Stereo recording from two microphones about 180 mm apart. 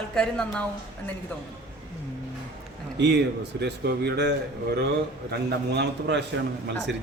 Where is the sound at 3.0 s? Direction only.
70° right (ahead or behind).